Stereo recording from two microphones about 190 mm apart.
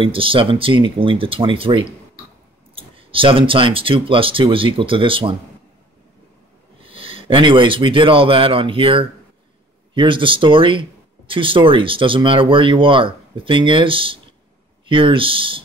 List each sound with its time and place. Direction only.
0.0 s speech: 30° right (ahead or behind)
6.8 s speech: 30° right (ahead or behind)